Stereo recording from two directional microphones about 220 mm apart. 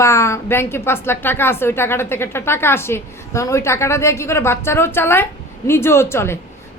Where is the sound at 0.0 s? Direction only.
10° left (ahead or behind).